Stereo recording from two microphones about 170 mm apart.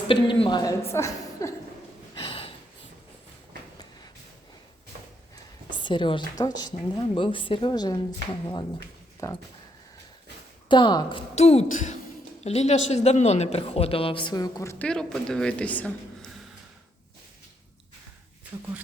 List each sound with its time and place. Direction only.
0.1 s a woman's voice: 30° left (ahead or behind)
2.2 s snort: 30° left (ahead or behind)
5.7 s a woman's voice: 30° left (ahead or behind)
9.2 s a woman's voice: 20° left (ahead or behind)
10.7 s a woman's voice: 25° left (ahead or behind)
11.3 s speech: 40° left (ahead or behind); by 14.8 s 15° left (ahead or behind)
14.8 s a woman's voice: 5° left (ahead or behind)
18.5 s speech: 15° right (ahead or behind)